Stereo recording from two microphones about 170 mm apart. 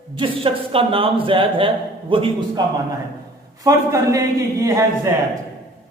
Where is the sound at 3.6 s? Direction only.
20° right (ahead or behind).